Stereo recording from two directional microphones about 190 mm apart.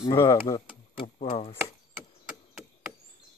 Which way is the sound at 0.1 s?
20° left (ahead or behind).